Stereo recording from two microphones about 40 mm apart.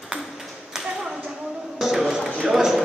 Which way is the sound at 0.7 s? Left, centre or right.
Centre.